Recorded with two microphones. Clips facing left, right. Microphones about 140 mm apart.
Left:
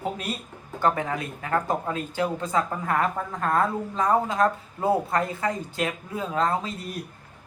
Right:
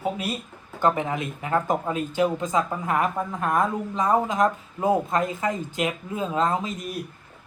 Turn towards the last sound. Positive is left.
turn(degrees=-15)  # may be behind; listen again after turning